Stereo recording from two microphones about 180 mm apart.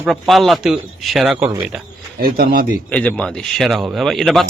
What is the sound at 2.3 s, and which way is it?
Speech, 55° right (ahead or behind).